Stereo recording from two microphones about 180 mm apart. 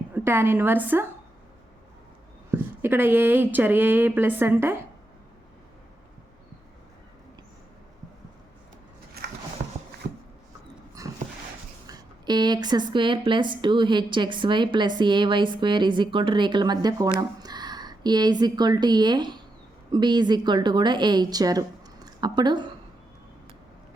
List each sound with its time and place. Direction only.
0.1 s speech: 10° right (ahead or behind)
2.5 s speech: 10° right (ahead or behind)
9.2 s a sound: 60° right (ahead or behind)
11.0 s dog: 20° right (ahead or behind)
11.9 s a woman's voice: 25° right (ahead or behind)